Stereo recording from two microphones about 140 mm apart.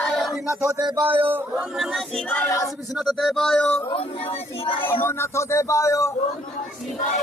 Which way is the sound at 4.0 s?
45° left (ahead or behind).